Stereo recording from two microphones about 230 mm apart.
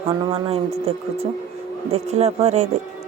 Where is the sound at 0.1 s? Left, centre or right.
Right.